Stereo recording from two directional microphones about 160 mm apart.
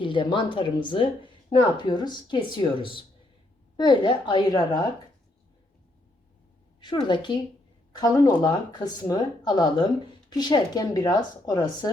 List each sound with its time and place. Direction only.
0.0 s speech: 30° left (ahead or behind)
6.7 s a woman's voice: 30° left (ahead or behind)